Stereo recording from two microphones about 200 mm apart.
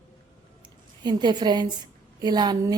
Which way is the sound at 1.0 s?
20° right (ahead or behind).